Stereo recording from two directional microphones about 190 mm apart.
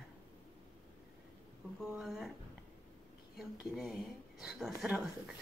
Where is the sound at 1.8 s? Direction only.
Centre (ahead or behind).